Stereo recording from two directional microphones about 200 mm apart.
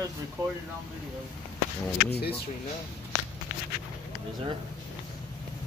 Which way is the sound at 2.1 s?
55° left (ahead or behind).